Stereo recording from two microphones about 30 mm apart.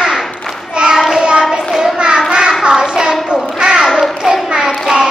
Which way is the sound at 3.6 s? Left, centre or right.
Right.